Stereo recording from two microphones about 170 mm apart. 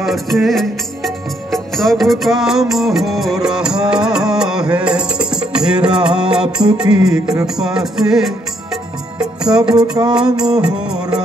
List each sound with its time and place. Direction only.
0.0 s music: centre (ahead or behind)
10.0 s music: 25° right (ahead or behind)
10.4 s music: 5° right (ahead or behind)